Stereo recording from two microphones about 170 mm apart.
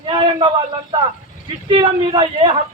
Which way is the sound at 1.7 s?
30° right (ahead or behind).